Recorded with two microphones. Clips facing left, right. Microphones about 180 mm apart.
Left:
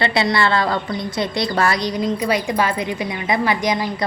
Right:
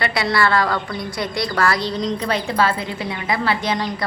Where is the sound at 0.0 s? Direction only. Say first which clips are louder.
Left 2 dB; 25° left (ahead or behind).